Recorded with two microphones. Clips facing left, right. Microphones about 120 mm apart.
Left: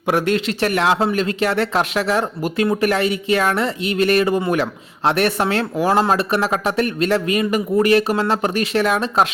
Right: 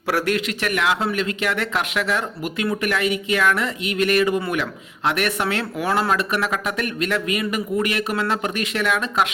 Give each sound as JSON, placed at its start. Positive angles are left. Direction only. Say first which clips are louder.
{"t": 0.1, "sound": "speech", "louder": "left 3 dB", "side_deg": 25}